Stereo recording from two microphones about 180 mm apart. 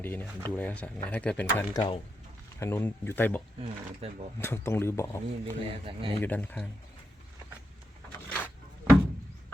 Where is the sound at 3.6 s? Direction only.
35° right (ahead or behind).